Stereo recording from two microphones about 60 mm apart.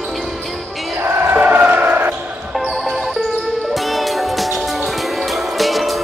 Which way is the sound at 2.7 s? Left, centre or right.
Centre.